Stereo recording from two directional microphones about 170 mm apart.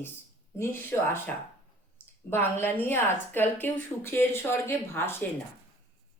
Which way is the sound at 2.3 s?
15° left (ahead or behind).